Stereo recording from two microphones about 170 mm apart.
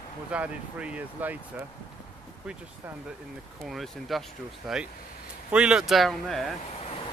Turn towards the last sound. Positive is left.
turn(degrees=0)  # may be behind; listen again after turning